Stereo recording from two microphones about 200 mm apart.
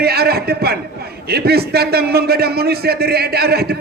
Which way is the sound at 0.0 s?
50° right (ahead or behind).